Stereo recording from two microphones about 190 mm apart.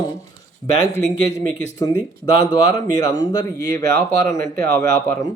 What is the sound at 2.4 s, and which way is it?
Speech, 20° left (ahead or behind).